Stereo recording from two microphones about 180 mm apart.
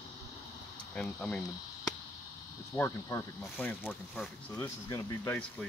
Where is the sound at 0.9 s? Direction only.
5° left (ahead or behind).